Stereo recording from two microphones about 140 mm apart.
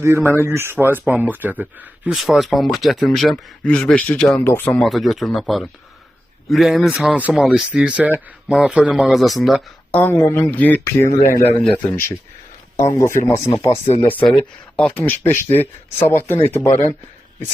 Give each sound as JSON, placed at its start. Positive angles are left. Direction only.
{"t": 0.0, "sound": "a man's voice", "side_deg": -20}
{"t": 4.8, "sound": "a man's voice", "side_deg": 0}
{"t": 9.9, "sound": "speech", "side_deg": 15}
{"t": 14.3, "sound": "speech", "side_deg": 5}